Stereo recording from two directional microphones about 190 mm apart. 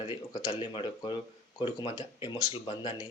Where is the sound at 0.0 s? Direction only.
25° left (ahead or behind).